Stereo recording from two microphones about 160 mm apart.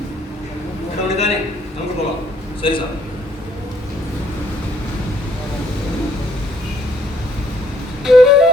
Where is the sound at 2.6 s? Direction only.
30° left (ahead or behind).